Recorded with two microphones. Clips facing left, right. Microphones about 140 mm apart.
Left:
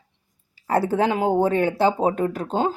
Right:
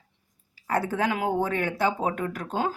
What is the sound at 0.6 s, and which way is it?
Speech, 30° left (ahead or behind).